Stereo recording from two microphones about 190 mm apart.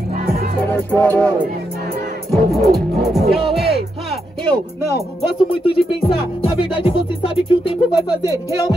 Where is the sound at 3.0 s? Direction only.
Centre (ahead or behind).